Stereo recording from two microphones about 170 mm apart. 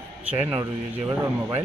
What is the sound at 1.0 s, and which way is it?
Speech, 15° right (ahead or behind).